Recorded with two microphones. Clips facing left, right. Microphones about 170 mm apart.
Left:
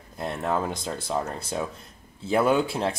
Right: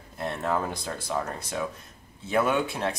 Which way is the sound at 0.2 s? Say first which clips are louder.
Left 1 dB; 15° left (ahead or behind).